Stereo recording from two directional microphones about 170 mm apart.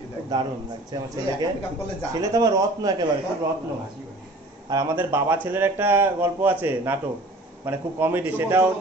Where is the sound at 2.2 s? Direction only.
20° right (ahead or behind).